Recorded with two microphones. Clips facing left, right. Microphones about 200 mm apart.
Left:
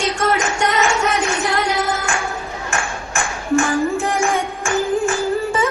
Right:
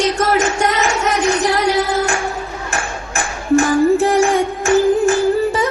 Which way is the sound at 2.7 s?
35° right (ahead or behind).